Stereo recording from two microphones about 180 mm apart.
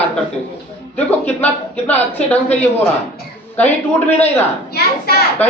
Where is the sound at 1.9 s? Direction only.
10° left (ahead or behind).